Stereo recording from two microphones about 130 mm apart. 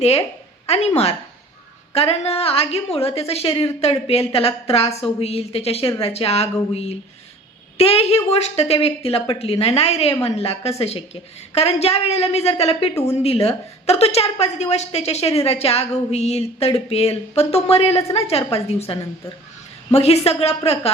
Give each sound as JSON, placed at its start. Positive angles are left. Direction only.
{"t": 0.0, "sound": "a woman's voice", "side_deg": 55}